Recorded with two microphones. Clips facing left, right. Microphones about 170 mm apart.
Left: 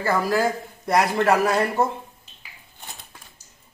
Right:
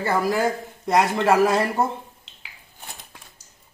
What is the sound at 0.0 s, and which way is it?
Speech, 15° right (ahead or behind).